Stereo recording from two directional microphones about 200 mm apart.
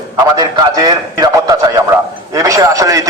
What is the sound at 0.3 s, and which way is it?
A man's voice, 20° right (ahead or behind).